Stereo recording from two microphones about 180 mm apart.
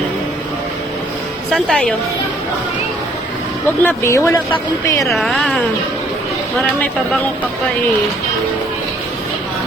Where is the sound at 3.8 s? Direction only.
15° left (ahead or behind).